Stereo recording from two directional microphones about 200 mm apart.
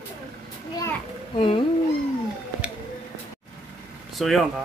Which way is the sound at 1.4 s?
25° left (ahead or behind).